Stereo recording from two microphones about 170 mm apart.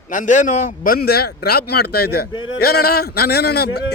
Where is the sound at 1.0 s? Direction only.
70° left (ahead or behind).